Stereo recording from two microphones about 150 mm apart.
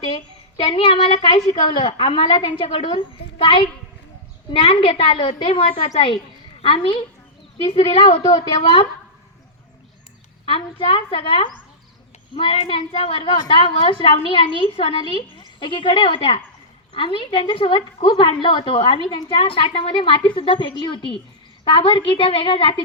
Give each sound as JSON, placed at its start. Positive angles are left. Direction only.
{"t": 0.0, "sound": "a sound", "side_deg": 40}
{"t": 1.9, "sound": "a woman's voice", "side_deg": 35}
{"t": 10.4, "sound": "a woman's voice", "side_deg": 35}